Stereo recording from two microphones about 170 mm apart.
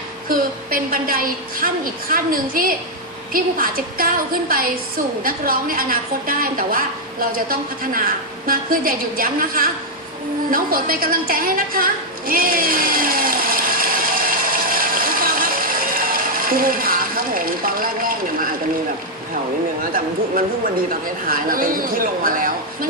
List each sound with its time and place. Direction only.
0.3 s a woman's voice: 60° right (ahead or behind)
10.5 s a sound: 60° right (ahead or behind)
21.2 s a woman's voice: 55° right (ahead or behind)